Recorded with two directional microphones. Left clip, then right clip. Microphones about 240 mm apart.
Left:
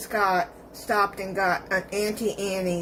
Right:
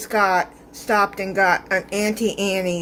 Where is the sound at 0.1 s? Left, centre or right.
Right.